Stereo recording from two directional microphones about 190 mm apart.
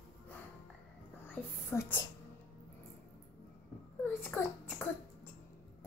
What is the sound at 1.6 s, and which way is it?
Speech, 10° left (ahead or behind).